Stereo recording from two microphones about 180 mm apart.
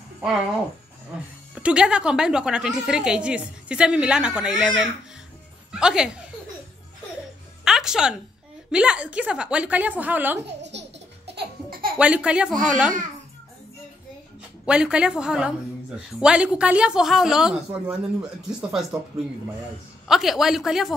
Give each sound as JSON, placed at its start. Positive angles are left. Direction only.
{"t": 1.5, "sound": "a woman's voice", "side_deg": -5}
{"t": 7.6, "sound": "music", "side_deg": 0}
{"t": 8.7, "sound": "a woman's voice", "side_deg": -5}
{"t": 10.6, "sound": "laughter", "side_deg": -75}
{"t": 12.0, "sound": "a woman's voice", "side_deg": -5}
{"t": 14.7, "sound": "a woman's voice", "side_deg": -5}
{"t": 20.1, "sound": "a woman's voice", "side_deg": 0}